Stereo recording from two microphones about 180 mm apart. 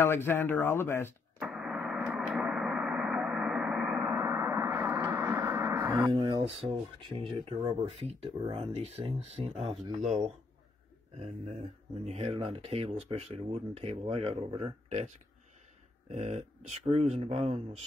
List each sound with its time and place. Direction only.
0.0 s speech: 10° left (ahead or behind)
1.4 s radio: 5° right (ahead or behind)
6.0 s speech: 25° right (ahead or behind)
12.0 s speech: 35° right (ahead or behind)
16.1 s speech: 40° right (ahead or behind)